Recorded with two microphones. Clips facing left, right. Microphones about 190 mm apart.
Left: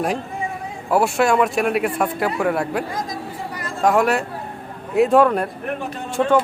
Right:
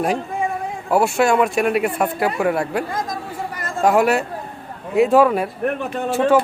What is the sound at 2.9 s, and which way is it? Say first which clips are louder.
Chatter: right 2 dB; 50° right (ahead or behind).